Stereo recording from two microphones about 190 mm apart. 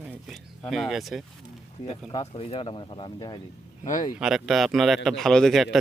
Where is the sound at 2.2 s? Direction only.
30° left (ahead or behind).